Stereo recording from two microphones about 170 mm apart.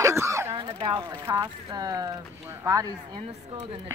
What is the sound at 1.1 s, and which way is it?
Speech, 15° right (ahead or behind).